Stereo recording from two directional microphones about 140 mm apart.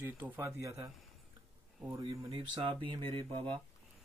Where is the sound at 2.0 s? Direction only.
40° right (ahead or behind).